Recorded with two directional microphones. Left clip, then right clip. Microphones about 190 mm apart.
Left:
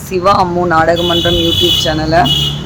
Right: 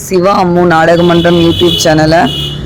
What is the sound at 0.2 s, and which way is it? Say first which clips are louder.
A woman's voice: right 2 dB; 30° right (ahead or behind).